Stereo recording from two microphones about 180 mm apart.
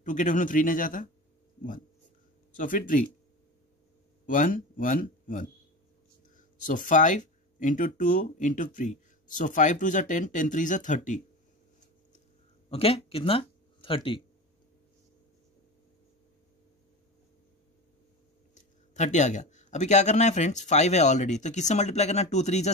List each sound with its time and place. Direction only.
0.0 s speech: 45° left (ahead or behind)
2.5 s speech: 50° left (ahead or behind)
4.3 s speech: 50° left (ahead or behind)
12.6 s speech: 35° left (ahead or behind)
18.5 s a man's voice: 40° left (ahead or behind)